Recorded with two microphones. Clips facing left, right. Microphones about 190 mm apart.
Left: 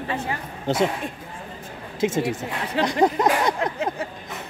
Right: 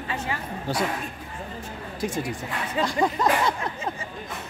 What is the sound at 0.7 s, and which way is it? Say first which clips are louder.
Speech: left 5 dB; 20° left (ahead or behind).